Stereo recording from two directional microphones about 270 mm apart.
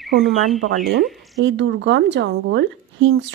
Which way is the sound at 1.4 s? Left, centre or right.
Right.